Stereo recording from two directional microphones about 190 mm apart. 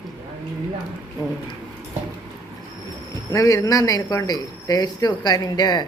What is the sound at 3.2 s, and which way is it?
Speech, 15° left (ahead or behind).